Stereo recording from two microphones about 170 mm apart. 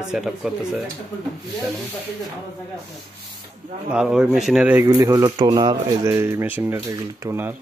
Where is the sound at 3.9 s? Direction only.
5° right (ahead or behind).